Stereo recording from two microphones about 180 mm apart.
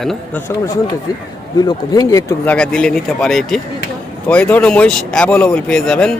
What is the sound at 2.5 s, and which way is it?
Speech, 5° left (ahead or behind).